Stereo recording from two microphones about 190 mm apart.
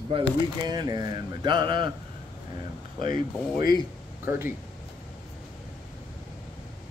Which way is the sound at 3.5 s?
20° right (ahead or behind).